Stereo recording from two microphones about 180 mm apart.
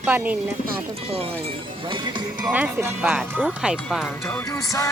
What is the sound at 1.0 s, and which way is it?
Speech, 35° right (ahead or behind).